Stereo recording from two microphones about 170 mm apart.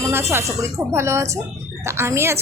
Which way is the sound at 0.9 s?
15° right (ahead or behind).